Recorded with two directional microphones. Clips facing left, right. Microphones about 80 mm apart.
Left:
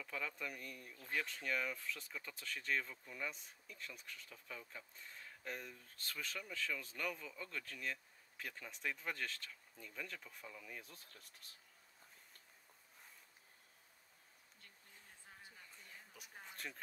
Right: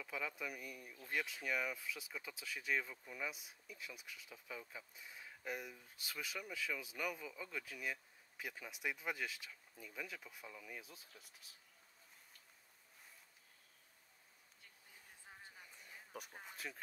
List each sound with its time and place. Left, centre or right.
0.0 s speech: centre
15.5 s a sound: centre
16.3 s speech: centre